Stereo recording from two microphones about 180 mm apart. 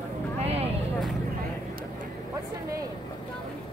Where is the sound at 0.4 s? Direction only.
35° right (ahead or behind).